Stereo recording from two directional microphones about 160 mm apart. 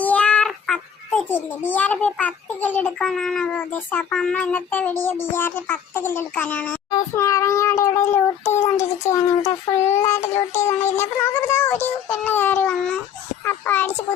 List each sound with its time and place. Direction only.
0.0 s a child's voice: 10° left (ahead or behind)